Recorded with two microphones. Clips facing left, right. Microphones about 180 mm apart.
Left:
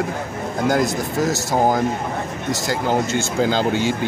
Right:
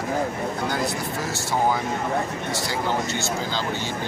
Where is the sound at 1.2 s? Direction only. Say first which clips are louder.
Left 7 dB; 45° left (ahead or behind).